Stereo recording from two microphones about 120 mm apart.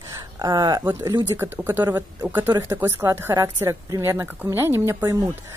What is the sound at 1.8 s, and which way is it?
A woman's voice, 30° right (ahead or behind).